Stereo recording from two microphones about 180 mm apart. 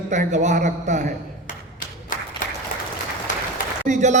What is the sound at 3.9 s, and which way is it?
Speech, 45° right (ahead or behind).